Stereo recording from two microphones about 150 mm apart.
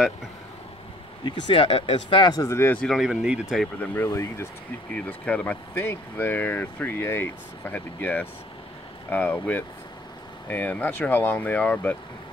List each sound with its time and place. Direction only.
1.2 s speech: 35° left (ahead or behind); by 3.6 s 5° right (ahead or behind)
3.8 s speech: 15° left (ahead or behind)